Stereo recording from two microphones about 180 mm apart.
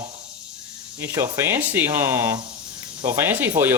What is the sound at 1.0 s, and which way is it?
Speech, 15° right (ahead or behind).